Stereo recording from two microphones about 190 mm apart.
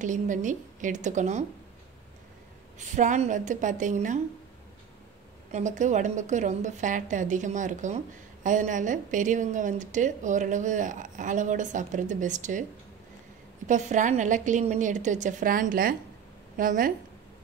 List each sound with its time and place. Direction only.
0.0 s a woman's voice: 40° right (ahead or behind)
2.8 s a woman's voice: 40° right (ahead or behind)
5.5 s a woman's voice: 40° right (ahead or behind)
13.7 s a woman's voice: 40° right (ahead or behind)